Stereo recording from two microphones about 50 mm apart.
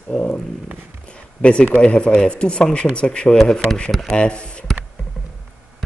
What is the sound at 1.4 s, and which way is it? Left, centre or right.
Speech, left.